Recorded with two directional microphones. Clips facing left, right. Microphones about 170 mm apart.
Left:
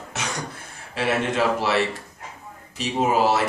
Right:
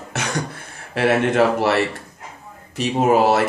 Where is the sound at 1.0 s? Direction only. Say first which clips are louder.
Right 6 dB; 60° right (ahead or behind).